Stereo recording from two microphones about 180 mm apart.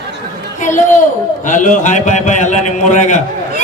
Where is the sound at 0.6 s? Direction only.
45° left (ahead or behind).